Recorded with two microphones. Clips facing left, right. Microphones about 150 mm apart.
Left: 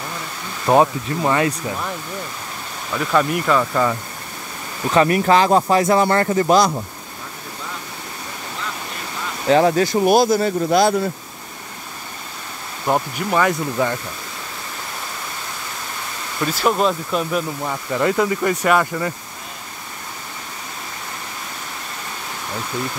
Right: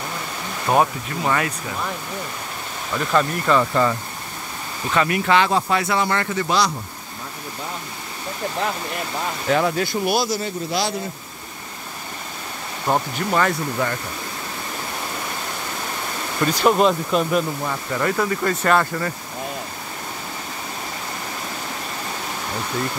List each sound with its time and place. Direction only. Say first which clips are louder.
0.7 s speech: left 4 dB; 20° left (ahead or behind)
3.0 s speech: left 2 dB; 5° left (ahead or behind)
4.9 s speech: left 4 dB; 35° left (ahead or behind)
9.5 s speech: left 6 dB; 35° left (ahead or behind); by 11.0 s 50° left (ahead or behind)
12.8 s speech: left 1 dB; 5° left (ahead or behind)
13.5 s speech: left 3 dB; 15° left (ahead or behind)
16.3 s speech: right 2 dB; 5° left (ahead or behind)
17.6 s speech: left 3 dB; 15° left (ahead or behind)